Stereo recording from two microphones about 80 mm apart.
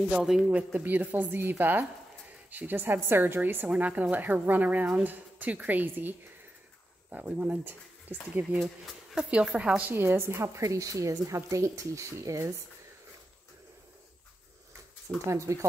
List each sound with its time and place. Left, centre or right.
0.1 s speech: centre
0.7 s speech: right
9.1 s speech: centre
9.8 s a woman's voice: right
15.2 s a woman's voice: right